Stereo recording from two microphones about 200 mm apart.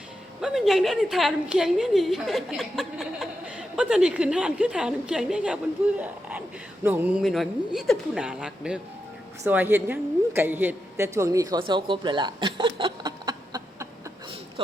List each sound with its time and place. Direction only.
0.4 s a woman's voice: centre (ahead or behind)
6.8 s a woman's voice: 10° right (ahead or behind)